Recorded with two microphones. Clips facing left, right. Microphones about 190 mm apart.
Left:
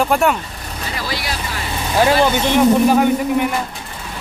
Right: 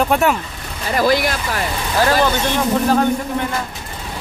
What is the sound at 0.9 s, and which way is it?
Speech, 50° right (ahead or behind).